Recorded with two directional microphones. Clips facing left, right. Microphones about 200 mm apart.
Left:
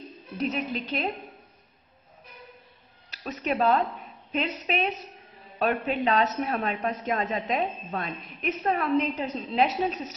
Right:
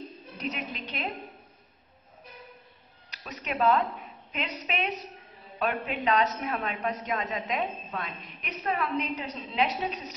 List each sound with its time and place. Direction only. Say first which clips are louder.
0.6 s a woman's voice: left 6 dB; 35° left (ahead or behind)
3.3 s a woman's voice: left 2 dB; 40° left (ahead or behind)